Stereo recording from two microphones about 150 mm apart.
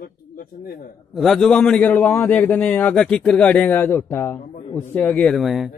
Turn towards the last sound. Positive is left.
turn(degrees=0)  # may be behind; listen again after turning